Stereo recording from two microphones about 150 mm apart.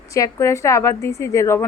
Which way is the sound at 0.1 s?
20° left (ahead or behind).